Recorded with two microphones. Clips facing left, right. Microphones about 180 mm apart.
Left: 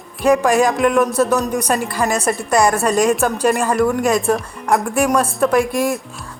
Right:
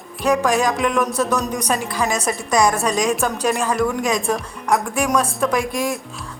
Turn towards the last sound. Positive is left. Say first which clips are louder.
# left 5 dB
turn(degrees=0)  # may be behind; listen again after turning